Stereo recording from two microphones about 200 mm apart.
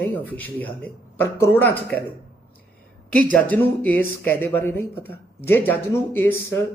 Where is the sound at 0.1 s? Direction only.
10° left (ahead or behind).